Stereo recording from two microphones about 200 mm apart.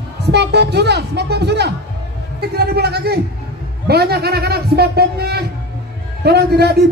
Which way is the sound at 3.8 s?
55° right (ahead or behind).